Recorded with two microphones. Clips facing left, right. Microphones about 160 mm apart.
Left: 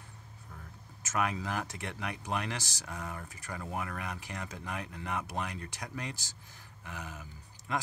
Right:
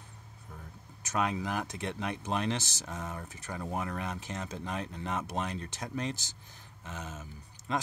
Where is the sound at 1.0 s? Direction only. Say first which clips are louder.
Right 1 dB; 20° right (ahead or behind).